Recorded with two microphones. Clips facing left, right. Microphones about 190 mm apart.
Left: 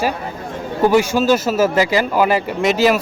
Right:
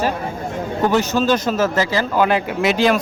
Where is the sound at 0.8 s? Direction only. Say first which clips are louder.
Left 3 dB; 10° left (ahead or behind).